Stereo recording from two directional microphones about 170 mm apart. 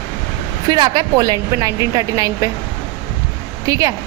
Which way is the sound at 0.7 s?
25° right (ahead or behind).